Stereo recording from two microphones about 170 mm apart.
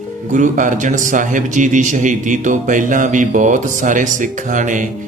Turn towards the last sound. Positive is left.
turn(degrees=-50)  # may be behind; listen again after turning